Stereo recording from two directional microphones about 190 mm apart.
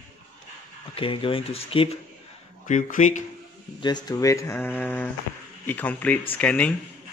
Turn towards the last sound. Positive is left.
turn(degrees=5)  # may be behind; listen again after turning